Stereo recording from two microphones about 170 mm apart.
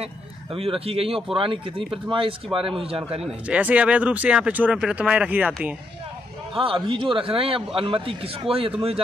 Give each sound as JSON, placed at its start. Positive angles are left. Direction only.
{"t": 0.0, "sound": "a man's voice", "side_deg": -35}
{"t": 3.4, "sound": "speech", "side_deg": -10}
{"t": 6.6, "sound": "a man's voice", "side_deg": -30}